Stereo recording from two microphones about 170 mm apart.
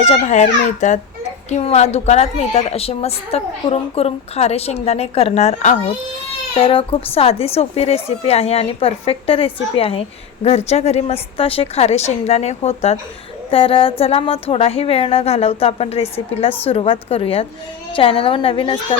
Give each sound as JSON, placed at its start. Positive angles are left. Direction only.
{"t": 0.0, "sound": "a child's voice", "side_deg": 45}